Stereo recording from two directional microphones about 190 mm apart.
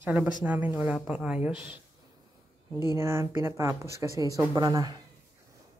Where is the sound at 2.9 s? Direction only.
15° right (ahead or behind).